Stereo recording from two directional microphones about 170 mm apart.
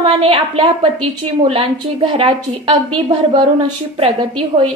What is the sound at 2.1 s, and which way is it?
A woman's voice, 30° right (ahead or behind).